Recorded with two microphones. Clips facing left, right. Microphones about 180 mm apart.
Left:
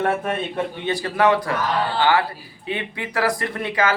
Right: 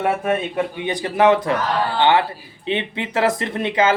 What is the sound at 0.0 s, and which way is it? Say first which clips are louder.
Speech: right 2 dB; 10° right (ahead or behind).